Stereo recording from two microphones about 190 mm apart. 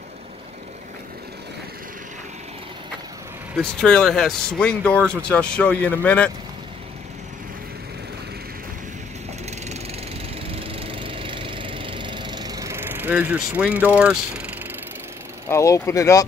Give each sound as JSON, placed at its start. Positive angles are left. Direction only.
{"t": 3.5, "sound": "speech", "side_deg": 5}
{"t": 10.6, "sound": "vehicle", "side_deg": -30}
{"t": 15.5, "sound": "speech", "side_deg": 15}